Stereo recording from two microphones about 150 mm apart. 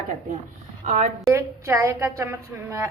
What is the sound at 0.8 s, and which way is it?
Speech, 50° right (ahead or behind).